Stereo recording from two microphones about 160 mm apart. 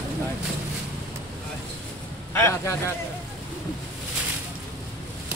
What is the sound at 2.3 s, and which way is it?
Speech, 15° left (ahead or behind).